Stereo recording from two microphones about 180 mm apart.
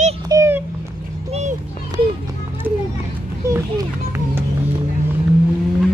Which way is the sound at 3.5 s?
15° right (ahead or behind).